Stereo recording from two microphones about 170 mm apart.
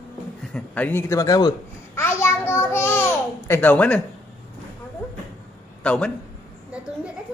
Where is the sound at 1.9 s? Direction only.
15° left (ahead or behind).